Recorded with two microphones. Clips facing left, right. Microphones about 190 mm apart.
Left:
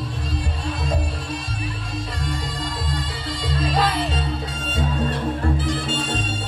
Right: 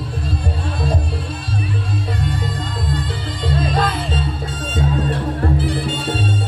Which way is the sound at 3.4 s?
55° right (ahead or behind).